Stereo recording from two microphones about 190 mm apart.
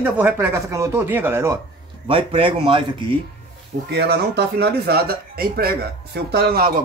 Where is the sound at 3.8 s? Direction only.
60° right (ahead or behind).